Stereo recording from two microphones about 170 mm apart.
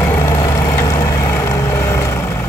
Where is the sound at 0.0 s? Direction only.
15° left (ahead or behind).